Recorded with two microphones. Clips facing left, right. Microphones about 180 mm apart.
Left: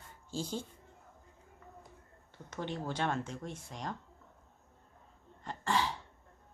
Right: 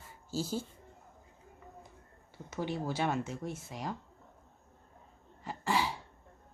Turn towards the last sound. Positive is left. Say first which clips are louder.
# right 1 dB
turn(degrees=-10)  # may be behind; listen again after turning